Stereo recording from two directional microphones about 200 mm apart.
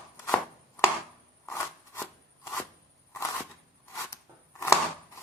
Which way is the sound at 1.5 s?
10° left (ahead or behind).